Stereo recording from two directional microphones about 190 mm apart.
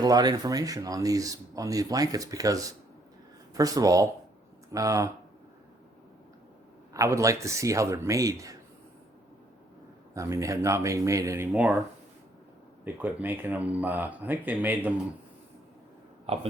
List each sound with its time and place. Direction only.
0.0 s a man's voice: 20° right (ahead or behind)
6.9 s a man's voice: 15° right (ahead or behind)
10.2 s a man's voice: 15° right (ahead or behind)
11.5 s speech: centre (ahead or behind)
12.8 s a man's voice: 10° right (ahead or behind)
16.2 s speech: 30° right (ahead or behind)